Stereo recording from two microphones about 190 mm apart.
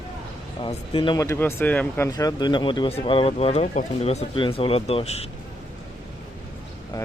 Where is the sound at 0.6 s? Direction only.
25° left (ahead or behind).